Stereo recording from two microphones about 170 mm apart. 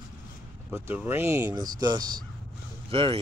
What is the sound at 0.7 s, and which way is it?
Speech, 15° right (ahead or behind).